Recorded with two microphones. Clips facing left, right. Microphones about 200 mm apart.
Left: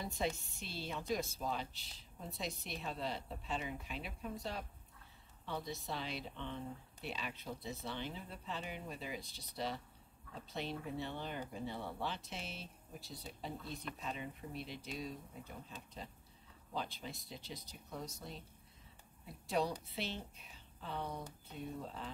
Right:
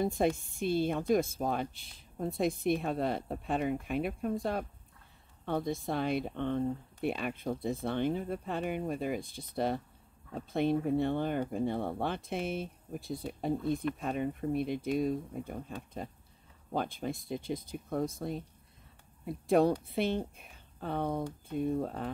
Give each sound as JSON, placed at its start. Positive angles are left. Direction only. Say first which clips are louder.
{"t": 0.0, "sound": "speech", "louder": "right 10 dB", "side_deg": -50}